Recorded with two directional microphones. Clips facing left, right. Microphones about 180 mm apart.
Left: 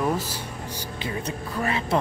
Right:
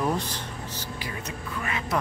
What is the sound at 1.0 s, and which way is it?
Speech, 25° left (ahead or behind).